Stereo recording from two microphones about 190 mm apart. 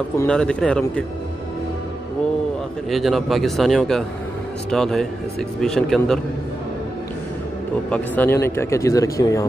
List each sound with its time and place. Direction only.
0.3 s a man's voice: 5° left (ahead or behind)
2.9 s a man's voice: centre (ahead or behind)
7.9 s speech: 10° left (ahead or behind)